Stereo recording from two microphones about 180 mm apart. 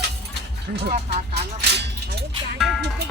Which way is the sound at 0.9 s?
35° right (ahead or behind).